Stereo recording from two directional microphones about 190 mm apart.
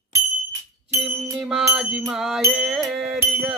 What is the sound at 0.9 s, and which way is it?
Music, 10° right (ahead or behind).